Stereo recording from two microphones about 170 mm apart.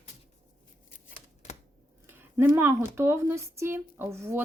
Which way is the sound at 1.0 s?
45° left (ahead or behind).